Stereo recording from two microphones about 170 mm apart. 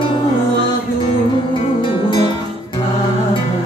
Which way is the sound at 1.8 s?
30° left (ahead or behind).